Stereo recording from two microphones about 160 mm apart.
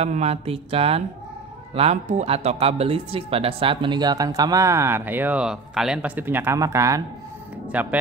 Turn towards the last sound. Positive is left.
turn(degrees=-10)  # may be behind; listen again after turning